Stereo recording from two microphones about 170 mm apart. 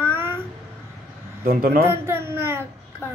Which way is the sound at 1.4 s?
60° right (ahead or behind).